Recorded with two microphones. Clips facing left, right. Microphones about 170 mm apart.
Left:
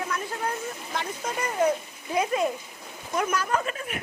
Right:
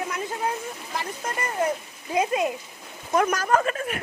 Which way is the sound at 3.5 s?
55° right (ahead or behind).